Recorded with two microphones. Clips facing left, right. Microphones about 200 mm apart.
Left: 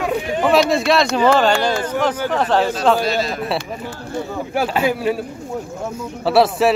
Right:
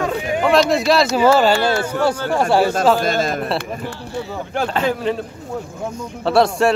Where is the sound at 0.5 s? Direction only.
Centre (ahead or behind).